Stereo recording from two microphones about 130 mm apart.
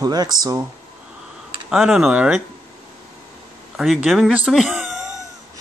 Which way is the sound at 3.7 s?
5° right (ahead or behind).